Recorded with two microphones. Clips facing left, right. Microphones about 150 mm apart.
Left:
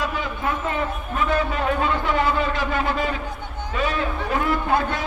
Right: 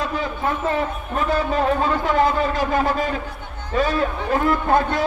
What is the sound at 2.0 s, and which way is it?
A man's voice, 40° right (ahead or behind).